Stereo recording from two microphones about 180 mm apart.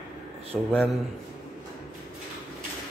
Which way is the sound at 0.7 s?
5° left (ahead or behind).